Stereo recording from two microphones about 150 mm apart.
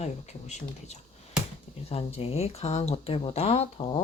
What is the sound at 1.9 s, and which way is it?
Speech, 40° left (ahead or behind).